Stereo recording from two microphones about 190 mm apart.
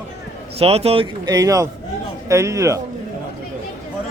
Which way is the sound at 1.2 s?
20° right (ahead or behind).